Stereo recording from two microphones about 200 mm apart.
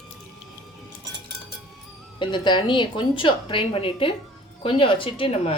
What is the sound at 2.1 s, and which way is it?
A woman's voice, 25° left (ahead or behind).